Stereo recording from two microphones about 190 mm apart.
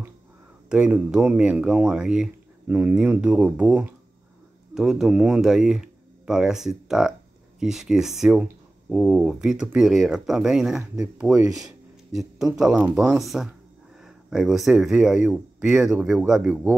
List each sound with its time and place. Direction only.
0.7 s speech: 5° right (ahead or behind)
11.3 s speech: 15° right (ahead or behind)
12.1 s a sound: centre (ahead or behind)
12.5 s speech: 5° right (ahead or behind)